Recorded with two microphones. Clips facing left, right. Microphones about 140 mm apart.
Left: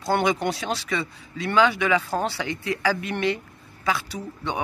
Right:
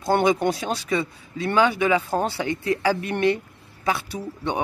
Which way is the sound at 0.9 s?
25° right (ahead or behind).